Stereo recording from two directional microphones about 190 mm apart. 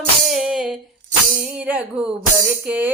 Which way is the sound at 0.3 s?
Centre (ahead or behind).